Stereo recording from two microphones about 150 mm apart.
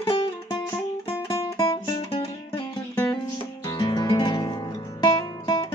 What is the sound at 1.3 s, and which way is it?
Music, 25° left (ahead or behind).